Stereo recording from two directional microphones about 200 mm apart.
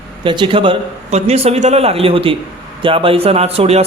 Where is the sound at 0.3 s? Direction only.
25° right (ahead or behind).